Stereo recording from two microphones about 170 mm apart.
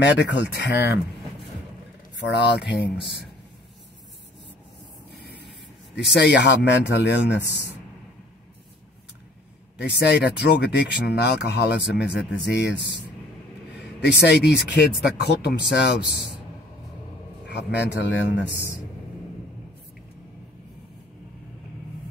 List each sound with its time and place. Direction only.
0.0 s speech: 90° left
2.2 s speech: 90° left
5.1 s spray: 75° left (ahead or behind)
6.1 s speech: 90° left
9.8 s speech: 80° left
12.4 s speech: 90° left
14.0 s speech: 85° left
17.5 s speech: 85° left